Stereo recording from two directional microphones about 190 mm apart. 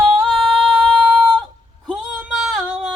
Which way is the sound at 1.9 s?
Centre (ahead or behind).